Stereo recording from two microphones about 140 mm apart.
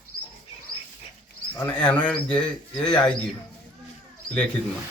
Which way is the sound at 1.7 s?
10° left (ahead or behind).